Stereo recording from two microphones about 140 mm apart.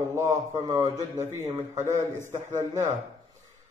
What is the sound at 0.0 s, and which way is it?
A man's voice, 20° right (ahead or behind).